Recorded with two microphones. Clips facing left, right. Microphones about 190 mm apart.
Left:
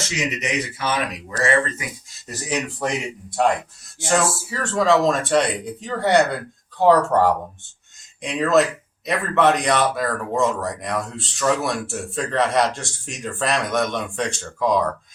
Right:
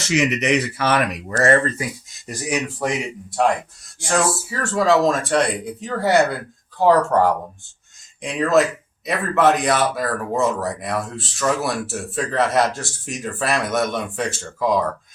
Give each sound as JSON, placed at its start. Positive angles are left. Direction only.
{"t": 0.2, "sound": "speech", "side_deg": -70}
{"t": 1.3, "sound": "speech", "side_deg": -50}
{"t": 1.8, "sound": "speech", "side_deg": -30}
{"t": 2.2, "sound": "speech", "side_deg": -10}
{"t": 3.4, "sound": "speech", "side_deg": 0}